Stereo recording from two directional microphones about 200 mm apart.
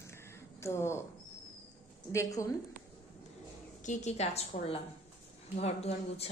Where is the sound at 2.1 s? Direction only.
15° left (ahead or behind).